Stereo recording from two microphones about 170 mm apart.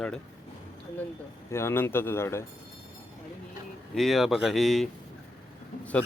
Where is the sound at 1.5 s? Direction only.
15° left (ahead or behind).